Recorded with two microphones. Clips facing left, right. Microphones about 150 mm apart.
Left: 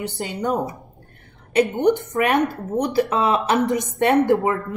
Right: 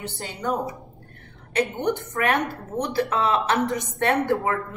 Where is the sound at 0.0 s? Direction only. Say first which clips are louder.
Left 6 dB; 20° left (ahead or behind).